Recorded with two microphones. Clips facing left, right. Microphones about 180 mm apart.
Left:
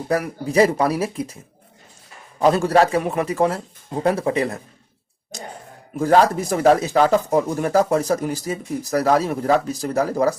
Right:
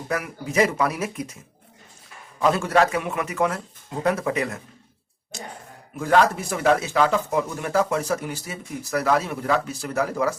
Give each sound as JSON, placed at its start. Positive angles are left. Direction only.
{"t": 0.1, "sound": "speech", "side_deg": 35}
{"t": 2.4, "sound": "speech", "side_deg": 35}
{"t": 5.3, "sound": "a sound", "side_deg": 40}
{"t": 6.0, "sound": "speech", "side_deg": 35}